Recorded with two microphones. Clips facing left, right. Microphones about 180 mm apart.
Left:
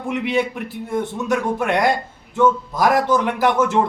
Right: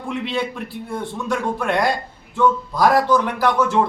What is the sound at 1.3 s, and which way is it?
A man's voice, 20° left (ahead or behind).